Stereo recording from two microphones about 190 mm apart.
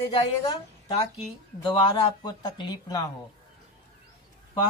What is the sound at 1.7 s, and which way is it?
Speech, 25° left (ahead or behind).